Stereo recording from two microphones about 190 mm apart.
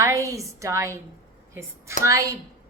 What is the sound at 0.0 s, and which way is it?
A woman's voice, 15° right (ahead or behind).